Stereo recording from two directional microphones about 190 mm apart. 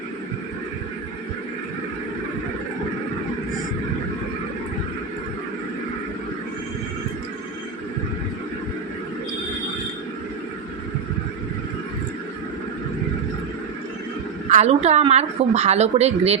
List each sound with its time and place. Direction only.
14.5 s a woman's voice: 35° right (ahead or behind)